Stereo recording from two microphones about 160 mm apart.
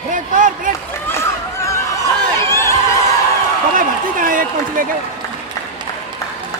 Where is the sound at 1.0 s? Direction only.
15° left (ahead or behind).